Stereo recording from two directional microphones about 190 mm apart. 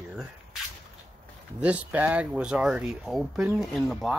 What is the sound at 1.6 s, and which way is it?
Speech, 5° right (ahead or behind).